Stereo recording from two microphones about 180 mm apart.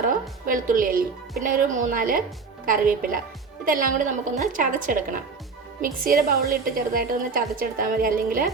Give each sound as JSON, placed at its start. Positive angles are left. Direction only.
{"t": 0.1, "sound": "a woman's voice", "side_deg": -50}